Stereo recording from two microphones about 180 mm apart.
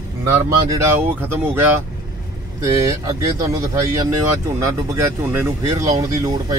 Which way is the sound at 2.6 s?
20° right (ahead or behind).